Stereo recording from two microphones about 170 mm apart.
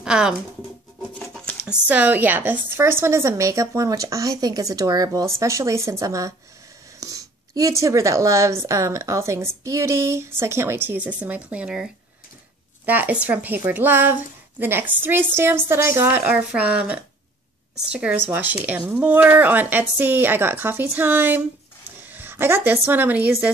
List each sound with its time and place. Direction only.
0.0 s speech: 5° right (ahead or behind)
1.2 s a sound: 5° left (ahead or behind)
1.7 s speech: 10° right (ahead or behind)